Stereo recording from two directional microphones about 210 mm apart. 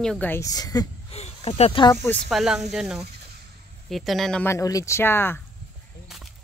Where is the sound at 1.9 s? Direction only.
10° left (ahead or behind).